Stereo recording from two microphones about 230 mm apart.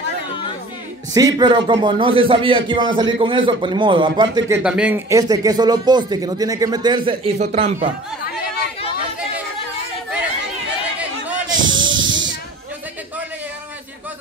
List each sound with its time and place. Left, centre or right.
1.1 s speech: centre
4.6 s speech: centre; by 7.9 s right
11.5 s snake: centre